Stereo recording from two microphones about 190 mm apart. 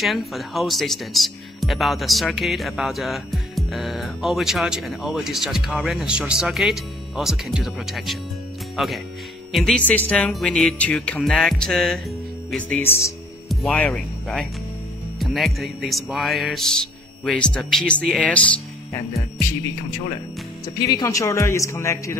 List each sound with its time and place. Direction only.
0.0 s a man's voice: centre (ahead or behind)
20.6 s a man's voice: 20° left (ahead or behind)